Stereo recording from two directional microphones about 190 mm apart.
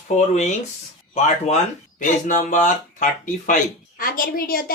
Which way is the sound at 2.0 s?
40° left (ahead or behind).